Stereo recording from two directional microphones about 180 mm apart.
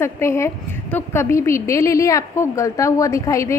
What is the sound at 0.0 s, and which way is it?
A woman's voice, 15° left (ahead or behind).